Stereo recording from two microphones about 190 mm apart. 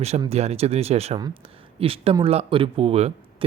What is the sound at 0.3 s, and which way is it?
Speech, 35° right (ahead or behind).